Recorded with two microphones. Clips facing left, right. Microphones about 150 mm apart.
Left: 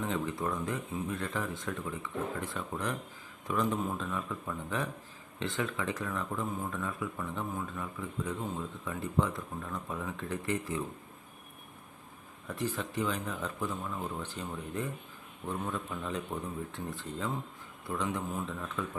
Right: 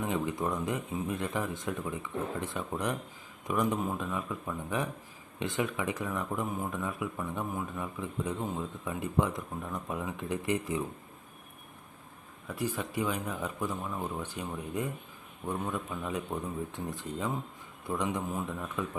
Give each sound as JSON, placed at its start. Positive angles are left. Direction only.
{"t": 0.0, "sound": "speech", "side_deg": -15}
{"t": 12.5, "sound": "speech", "side_deg": -10}